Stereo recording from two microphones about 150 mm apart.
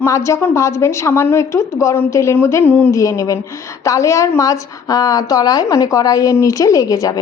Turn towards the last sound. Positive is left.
turn(degrees=25)  # may be behind; listen again after turning